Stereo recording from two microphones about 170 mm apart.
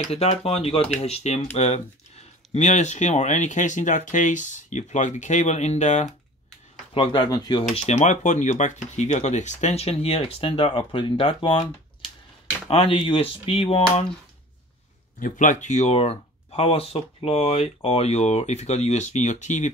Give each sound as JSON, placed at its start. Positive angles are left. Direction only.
{"t": 0.1, "sound": "speech", "side_deg": 35}
{"t": 6.9, "sound": "speech", "side_deg": 30}
{"t": 7.7, "sound": "speech", "side_deg": 40}
{"t": 12.6, "sound": "speech", "side_deg": 35}
{"t": 15.1, "sound": "speech", "side_deg": 50}